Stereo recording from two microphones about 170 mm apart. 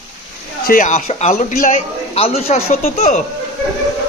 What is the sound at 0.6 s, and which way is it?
A man's voice, 50° left (ahead or behind).